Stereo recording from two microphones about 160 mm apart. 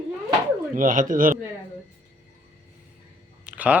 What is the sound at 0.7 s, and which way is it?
Speech, 55° right (ahead or behind).